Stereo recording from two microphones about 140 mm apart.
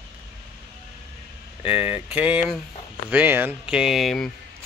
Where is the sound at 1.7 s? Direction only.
40° left (ahead or behind).